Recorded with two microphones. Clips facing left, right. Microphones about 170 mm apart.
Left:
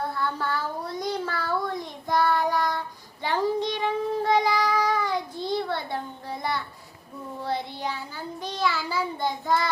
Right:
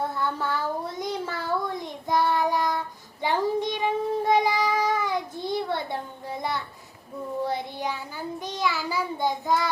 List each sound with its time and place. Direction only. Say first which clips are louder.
0.2 s child singing: right 1 dB; 15° right (ahead or behind)
5.5 s a sound: right 1 dB; 15° right (ahead or behind)
7.4 s child singing: left 2 dB; 15° right (ahead or behind)